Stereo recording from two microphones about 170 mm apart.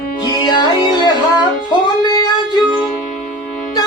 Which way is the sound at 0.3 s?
25° left (ahead or behind).